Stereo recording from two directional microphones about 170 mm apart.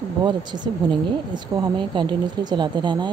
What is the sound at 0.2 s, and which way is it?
Speech, 25° right (ahead or behind).